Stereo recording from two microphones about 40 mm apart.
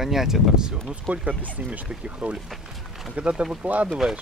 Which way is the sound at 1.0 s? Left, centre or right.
Right.